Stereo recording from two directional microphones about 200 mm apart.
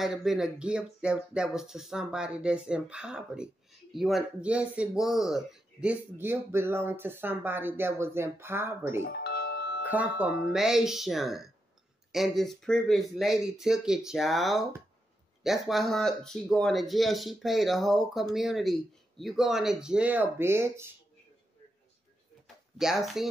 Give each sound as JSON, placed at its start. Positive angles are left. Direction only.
{"t": 0.0, "sound": "speech", "side_deg": 0}
{"t": 9.0, "sound": "music", "side_deg": 55}
{"t": 9.8, "sound": "speech", "side_deg": -5}
{"t": 22.8, "sound": "speech", "side_deg": 0}